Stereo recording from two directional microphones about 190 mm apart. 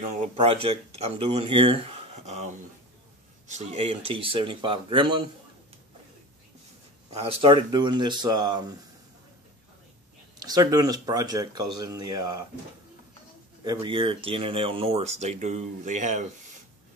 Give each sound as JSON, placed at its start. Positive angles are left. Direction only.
{"t": 0.2, "sound": "speech", "side_deg": -30}
{"t": 7.1, "sound": "speech", "side_deg": -30}
{"t": 10.4, "sound": "speech", "side_deg": -20}
{"t": 13.7, "sound": "speech", "side_deg": -25}